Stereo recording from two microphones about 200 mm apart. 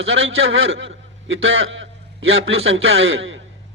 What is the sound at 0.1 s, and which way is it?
A man's voice, 80° right.